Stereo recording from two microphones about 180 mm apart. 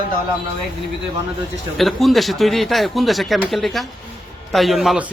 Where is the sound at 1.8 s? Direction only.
Centre (ahead or behind).